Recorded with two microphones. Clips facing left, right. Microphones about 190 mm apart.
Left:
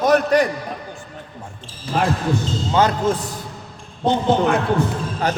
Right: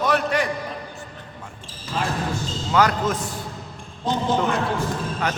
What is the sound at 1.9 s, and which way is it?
Speech, 60° left (ahead or behind).